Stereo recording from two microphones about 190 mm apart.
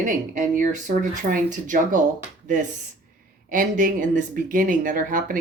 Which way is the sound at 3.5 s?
45° right (ahead or behind).